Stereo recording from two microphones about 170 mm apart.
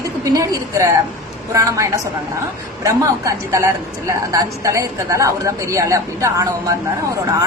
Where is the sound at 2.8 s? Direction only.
20° right (ahead or behind).